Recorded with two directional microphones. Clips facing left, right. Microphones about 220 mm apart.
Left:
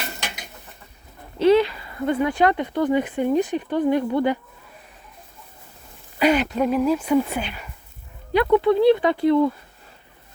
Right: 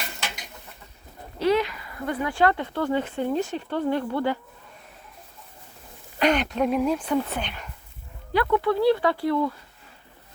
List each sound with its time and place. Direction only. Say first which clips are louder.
1.4 s speech: left 6 dB; 25° left (ahead or behind)
6.1 s speech: left 3 dB; 5° left (ahead or behind)
8.3 s speech: left 5 dB; 20° left (ahead or behind)